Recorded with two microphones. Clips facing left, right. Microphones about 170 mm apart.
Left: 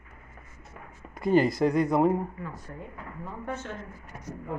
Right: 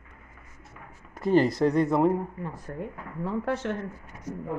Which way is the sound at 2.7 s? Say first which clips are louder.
Right 6 dB; 50° right (ahead or behind).